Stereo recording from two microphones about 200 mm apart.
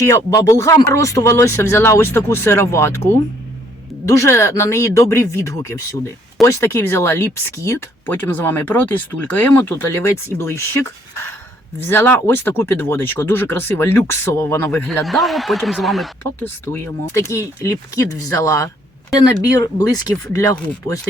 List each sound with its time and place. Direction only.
0.0 s speech: 15° left (ahead or behind)
15.0 s speech: centre (ahead or behind)
16.2 s speech: 10° left (ahead or behind)